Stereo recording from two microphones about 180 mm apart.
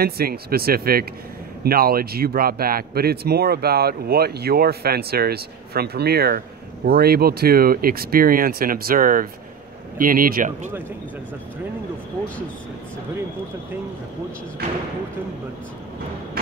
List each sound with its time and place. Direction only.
0.0 s a man's voice: 55° right (ahead or behind)